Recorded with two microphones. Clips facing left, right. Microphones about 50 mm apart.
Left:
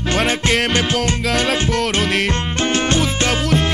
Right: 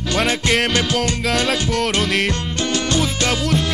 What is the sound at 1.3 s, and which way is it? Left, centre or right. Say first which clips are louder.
Music: left 2 dB; centre.